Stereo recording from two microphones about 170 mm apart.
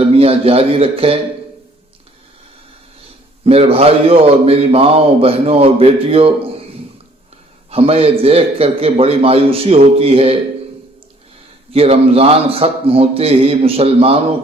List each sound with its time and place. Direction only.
0.0 s a man's voice: 35° right (ahead or behind)
3.4 s speech: 35° right (ahead or behind)
7.7 s speech: 35° right (ahead or behind)
11.7 s speech: 35° right (ahead or behind)